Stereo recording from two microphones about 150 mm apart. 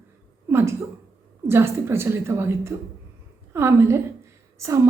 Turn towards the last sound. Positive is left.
turn(degrees=-20)  # may be behind; listen again after turning